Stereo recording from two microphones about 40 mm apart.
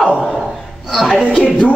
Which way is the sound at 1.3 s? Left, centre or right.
Left.